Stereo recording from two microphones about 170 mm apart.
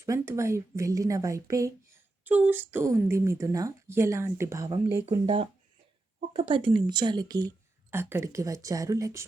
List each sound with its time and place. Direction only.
0.0 s speech: 15° right (ahead or behind)
5.1 s speech: 30° right (ahead or behind)
6.5 s speech: 30° right (ahead or behind)